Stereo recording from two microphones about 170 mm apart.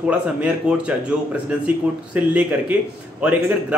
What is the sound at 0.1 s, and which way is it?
A man's voice, 5° right (ahead or behind).